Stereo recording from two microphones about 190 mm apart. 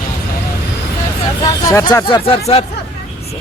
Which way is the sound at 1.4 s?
20° left (ahead or behind).